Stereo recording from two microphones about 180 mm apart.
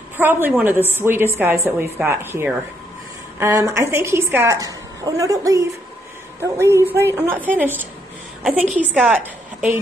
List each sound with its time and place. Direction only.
0.2 s a woman's voice: 10° right (ahead or behind)
9.2 s a woman's voice: 10° right (ahead or behind)